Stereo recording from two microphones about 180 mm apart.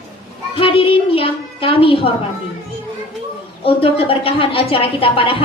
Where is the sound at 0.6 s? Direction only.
30° left (ahead or behind).